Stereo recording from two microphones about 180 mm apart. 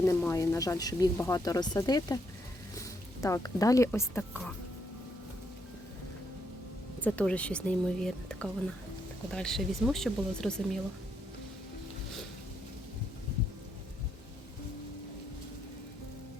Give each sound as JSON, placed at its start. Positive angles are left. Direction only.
{"t": 0.0, "sound": "speech", "side_deg": 15}
{"t": 7.0, "sound": "speech", "side_deg": 5}